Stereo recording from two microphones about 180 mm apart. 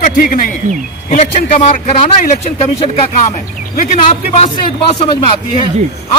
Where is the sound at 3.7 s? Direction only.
40° left (ahead or behind).